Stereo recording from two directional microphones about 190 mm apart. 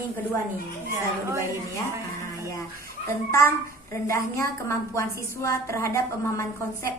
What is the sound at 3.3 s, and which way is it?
A woman's voice, 15° left (ahead or behind).